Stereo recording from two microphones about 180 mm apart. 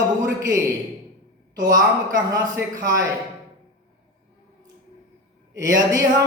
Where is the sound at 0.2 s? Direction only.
20° right (ahead or behind).